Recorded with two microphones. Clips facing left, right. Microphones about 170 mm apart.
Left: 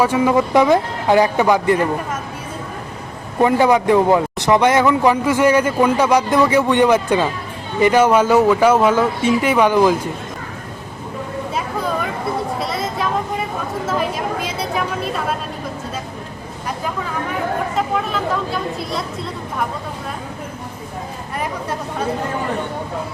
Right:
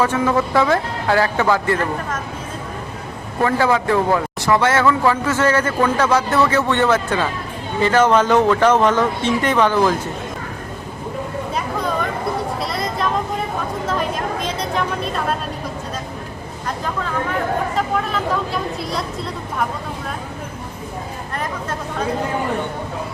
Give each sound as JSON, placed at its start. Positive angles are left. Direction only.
{"t": 0.0, "sound": "speech", "side_deg": 15}
{"t": 3.4, "sound": "speech", "side_deg": 20}
{"t": 12.5, "sound": "vehicle", "side_deg": 0}
{"t": 14.4, "sound": "speech", "side_deg": 5}
{"t": 17.7, "sound": "speech", "side_deg": 0}